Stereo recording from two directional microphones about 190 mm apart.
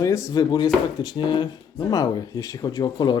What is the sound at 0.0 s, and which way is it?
Speech, 15° left (ahead or behind).